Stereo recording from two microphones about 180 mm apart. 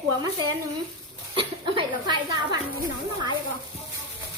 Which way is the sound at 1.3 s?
30° right (ahead or behind).